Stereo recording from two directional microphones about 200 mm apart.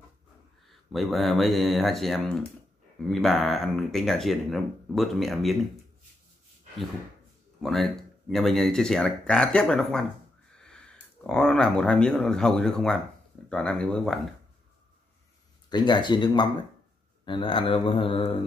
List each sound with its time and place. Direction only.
0.7 s speech: centre (ahead or behind)
7.6 s speech: centre (ahead or behind)
15.7 s speech: 20° left (ahead or behind)